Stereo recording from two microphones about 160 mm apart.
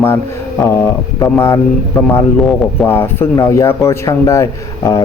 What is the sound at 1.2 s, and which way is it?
Speech, 15° left (ahead or behind).